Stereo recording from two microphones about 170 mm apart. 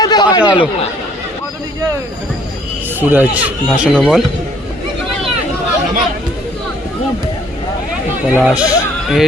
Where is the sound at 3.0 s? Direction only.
10° right (ahead or behind).